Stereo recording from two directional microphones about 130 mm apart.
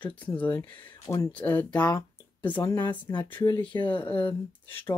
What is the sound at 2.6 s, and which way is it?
Speech, 30° left (ahead or behind).